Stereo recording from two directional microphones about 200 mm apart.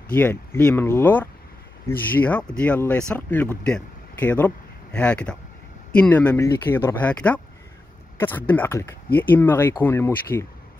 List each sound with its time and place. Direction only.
0.1 s speech: 10° left (ahead or behind)